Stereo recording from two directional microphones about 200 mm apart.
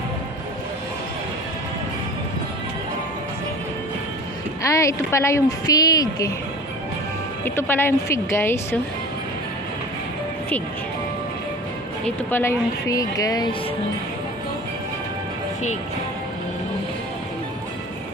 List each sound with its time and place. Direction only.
4.6 s a woman's voice: 15° left (ahead or behind)
7.4 s a woman's voice: 10° left (ahead or behind)
12.0 s a woman's voice: 10° left (ahead or behind)